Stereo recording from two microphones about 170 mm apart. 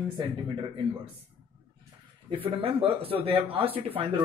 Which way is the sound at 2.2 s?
35° right (ahead or behind).